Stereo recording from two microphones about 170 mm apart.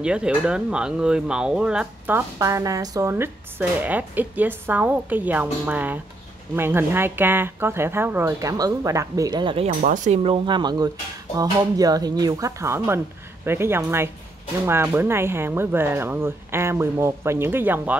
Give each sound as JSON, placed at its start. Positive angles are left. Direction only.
{"t": 0.0, "sound": "speech", "side_deg": -5}
{"t": 9.7, "sound": "speech", "side_deg": -50}
{"t": 10.2, "sound": "speech", "side_deg": -30}